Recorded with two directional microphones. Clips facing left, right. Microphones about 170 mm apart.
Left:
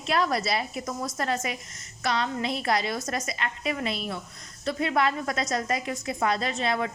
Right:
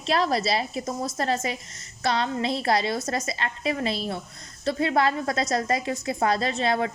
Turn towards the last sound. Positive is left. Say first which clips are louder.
# right 3 dB
turn(degrees=-35)  # may be behind; listen again after turning